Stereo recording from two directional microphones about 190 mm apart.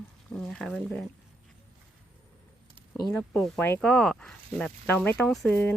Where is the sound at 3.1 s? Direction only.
5° left (ahead or behind).